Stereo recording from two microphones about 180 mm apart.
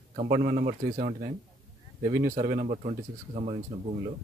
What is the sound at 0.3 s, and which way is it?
Speech, 55° right (ahead or behind).